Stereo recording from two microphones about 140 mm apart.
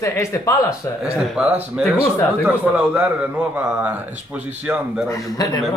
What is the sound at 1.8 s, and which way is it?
Speech, 10° right (ahead or behind).